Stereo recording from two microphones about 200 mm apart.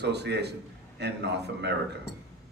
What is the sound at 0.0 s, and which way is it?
A man's voice, 55° right (ahead or behind).